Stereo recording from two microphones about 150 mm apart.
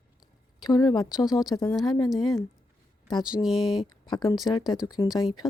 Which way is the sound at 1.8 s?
30° left (ahead or behind).